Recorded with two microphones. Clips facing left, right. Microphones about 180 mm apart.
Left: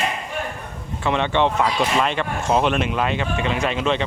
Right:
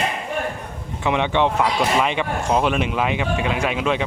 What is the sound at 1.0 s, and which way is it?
Speech, 15° right (ahead or behind).